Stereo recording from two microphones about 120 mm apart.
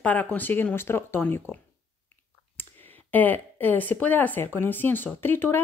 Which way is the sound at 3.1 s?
15° left (ahead or behind).